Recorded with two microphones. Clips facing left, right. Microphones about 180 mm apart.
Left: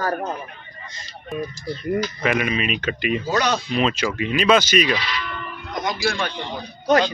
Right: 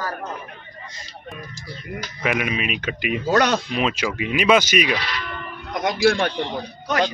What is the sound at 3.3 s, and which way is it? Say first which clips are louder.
Speech: right 6 dB; 60° right (ahead or behind).